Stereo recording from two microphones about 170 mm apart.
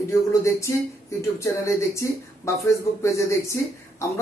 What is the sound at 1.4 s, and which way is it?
Speech, 15° left (ahead or behind).